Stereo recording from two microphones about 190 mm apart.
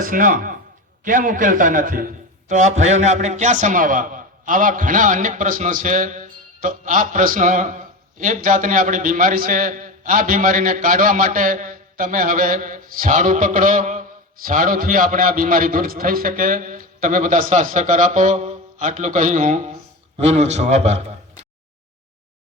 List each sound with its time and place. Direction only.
0.0 s a man's voice: 45° right (ahead or behind)